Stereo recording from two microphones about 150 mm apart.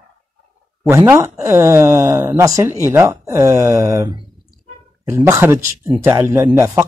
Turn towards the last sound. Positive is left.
turn(degrees=-15)  # may be behind; listen again after turning